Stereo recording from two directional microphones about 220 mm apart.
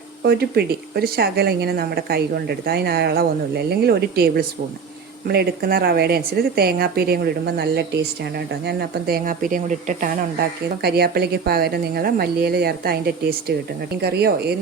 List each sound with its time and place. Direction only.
0.2 s speech: 45° right (ahead or behind)